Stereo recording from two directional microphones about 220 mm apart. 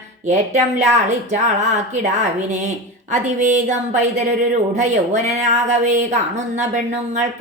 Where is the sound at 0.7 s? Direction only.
30° right (ahead or behind).